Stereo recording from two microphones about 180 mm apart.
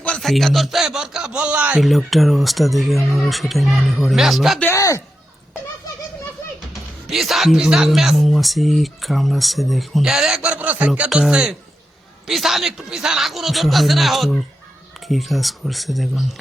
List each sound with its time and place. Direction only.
0.0 s speech: 5° left (ahead or behind)
4.6 s speech: 15° left (ahead or behind)
7.1 s speech: centre (ahead or behind)